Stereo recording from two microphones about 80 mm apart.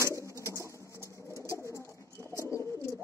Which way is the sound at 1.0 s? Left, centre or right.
Left.